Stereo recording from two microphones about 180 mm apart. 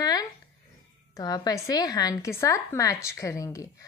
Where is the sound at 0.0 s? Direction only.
20° left (ahead or behind).